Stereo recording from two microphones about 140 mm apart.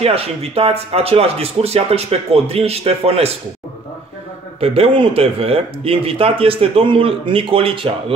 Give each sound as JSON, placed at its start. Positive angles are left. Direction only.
{"t": 0.0, "sound": "speech", "side_deg": -45}
{"t": 4.6, "sound": "speech", "side_deg": -40}